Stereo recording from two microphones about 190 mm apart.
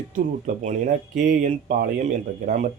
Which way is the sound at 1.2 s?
45° right (ahead or behind).